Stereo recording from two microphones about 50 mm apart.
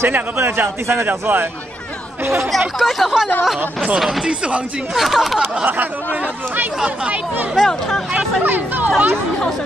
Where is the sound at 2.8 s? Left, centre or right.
Centre.